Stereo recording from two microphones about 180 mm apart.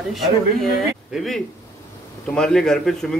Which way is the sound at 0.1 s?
Centre (ahead or behind).